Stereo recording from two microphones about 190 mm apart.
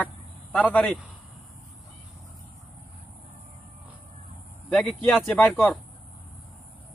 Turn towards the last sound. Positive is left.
turn(degrees=5)  # may be behind; listen again after turning